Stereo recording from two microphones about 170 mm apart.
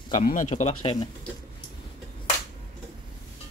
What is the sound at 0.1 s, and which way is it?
Speech, 45° left (ahead or behind).